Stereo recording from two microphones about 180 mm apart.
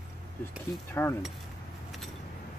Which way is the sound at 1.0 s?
10° left (ahead or behind).